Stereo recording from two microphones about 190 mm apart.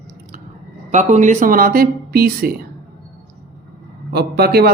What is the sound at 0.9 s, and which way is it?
Speech, 40° right (ahead or behind).